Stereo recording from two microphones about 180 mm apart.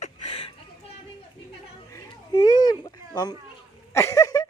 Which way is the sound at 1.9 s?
20° left (ahead or behind).